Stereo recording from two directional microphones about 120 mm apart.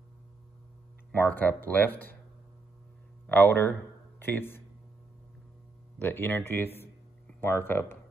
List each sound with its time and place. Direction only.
1.1 s speech: 15° left (ahead or behind)
3.3 s speech: 15° left (ahead or behind)
5.9 s speech: 15° left (ahead or behind)